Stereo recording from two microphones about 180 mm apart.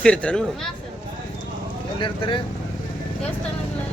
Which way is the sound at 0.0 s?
5° left (ahead or behind).